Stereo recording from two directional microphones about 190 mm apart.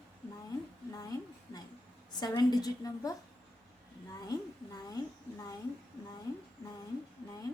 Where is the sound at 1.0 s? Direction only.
20° left (ahead or behind).